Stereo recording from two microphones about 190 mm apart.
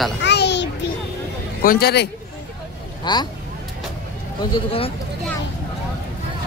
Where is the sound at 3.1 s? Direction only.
25° left (ahead or behind).